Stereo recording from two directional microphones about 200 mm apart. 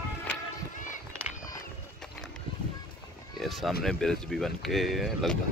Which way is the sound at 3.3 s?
Centre (ahead or behind).